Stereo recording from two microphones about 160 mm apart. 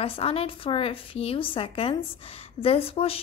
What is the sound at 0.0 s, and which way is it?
A woman's voice, 35° left (ahead or behind).